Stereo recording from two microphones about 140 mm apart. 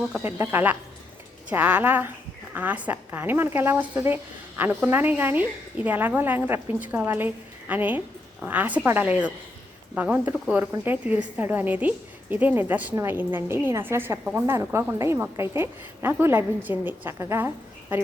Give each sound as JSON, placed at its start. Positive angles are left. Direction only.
{"t": 0.2, "sound": "a woman's voice", "side_deg": -15}